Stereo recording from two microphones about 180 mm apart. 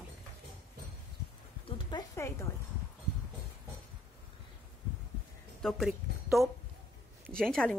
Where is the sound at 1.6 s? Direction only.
30° left (ahead or behind).